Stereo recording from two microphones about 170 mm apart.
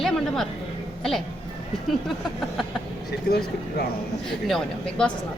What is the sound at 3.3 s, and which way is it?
Speech, 60° left (ahead or behind).